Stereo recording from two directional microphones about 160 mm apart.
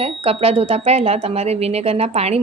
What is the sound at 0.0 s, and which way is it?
Speech, 35° right (ahead or behind).